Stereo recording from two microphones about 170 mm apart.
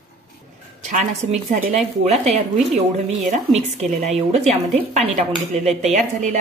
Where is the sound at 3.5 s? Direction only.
40° right (ahead or behind).